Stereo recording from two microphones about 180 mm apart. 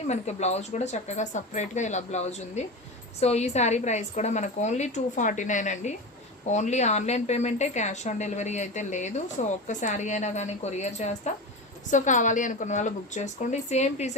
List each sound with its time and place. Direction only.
0.1 s a woman's voice: 40° left (ahead or behind)